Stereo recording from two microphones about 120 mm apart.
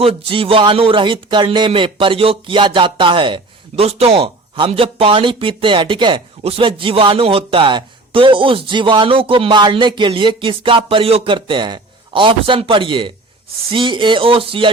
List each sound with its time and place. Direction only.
0.0 s speech: 50° right (ahead or behind)